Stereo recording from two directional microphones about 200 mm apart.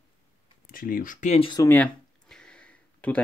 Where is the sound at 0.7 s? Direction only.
45° left (ahead or behind); by 1.6 s 30° left (ahead or behind).